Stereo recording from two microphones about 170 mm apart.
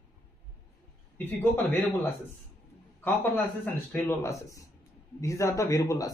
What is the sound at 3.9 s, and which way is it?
A man's voice, 15° left (ahead or behind).